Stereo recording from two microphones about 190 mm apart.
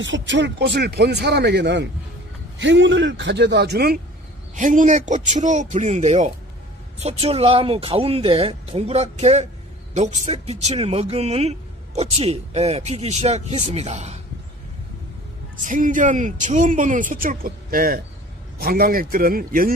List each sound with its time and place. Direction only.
0.0 s a man's voice: 75° right (ahead or behind); by 4.0 s 55° right (ahead or behind)
4.6 s speech: 40° right (ahead or behind)
15.6 s speech: 45° right (ahead or behind)